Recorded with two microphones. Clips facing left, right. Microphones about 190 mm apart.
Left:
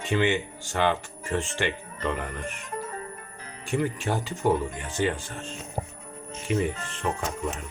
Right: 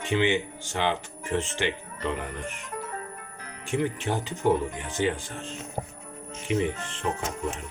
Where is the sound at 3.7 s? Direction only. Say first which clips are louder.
Even; 20° right (ahead or behind).